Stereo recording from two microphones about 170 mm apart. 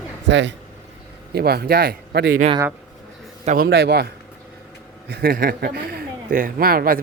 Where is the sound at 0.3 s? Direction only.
90° right.